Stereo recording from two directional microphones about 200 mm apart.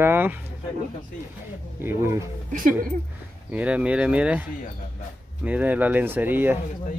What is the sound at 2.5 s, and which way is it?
Speech, 45° right (ahead or behind).